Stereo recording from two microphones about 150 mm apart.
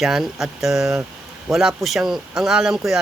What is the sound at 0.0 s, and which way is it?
Speech, centre (ahead or behind).